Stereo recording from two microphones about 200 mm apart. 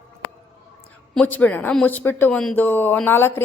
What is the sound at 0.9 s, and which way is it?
A woman's voice, 5° left (ahead or behind).